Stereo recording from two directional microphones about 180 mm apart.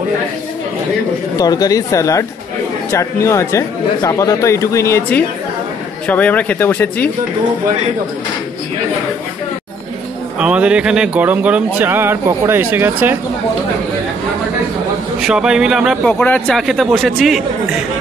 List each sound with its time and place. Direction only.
1.4 s speech: 20° left (ahead or behind)
10.4 s speech: 5° right (ahead or behind)
15.1 s a man's voice: 5° right (ahead or behind)